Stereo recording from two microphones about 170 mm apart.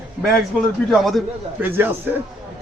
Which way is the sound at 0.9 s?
Centre (ahead or behind).